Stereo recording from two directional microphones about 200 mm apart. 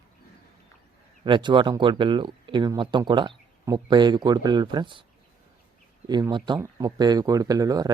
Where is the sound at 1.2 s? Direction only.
25° right (ahead or behind).